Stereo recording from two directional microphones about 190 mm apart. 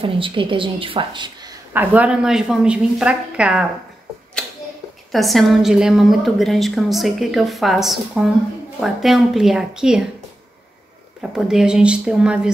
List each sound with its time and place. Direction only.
0.0 s a woman's voice: 25° right (ahead or behind)
1.7 s a woman's voice: 10° right (ahead or behind)
5.1 s a woman's voice: centre (ahead or behind)
11.1 s a woman's voice: 5° right (ahead or behind)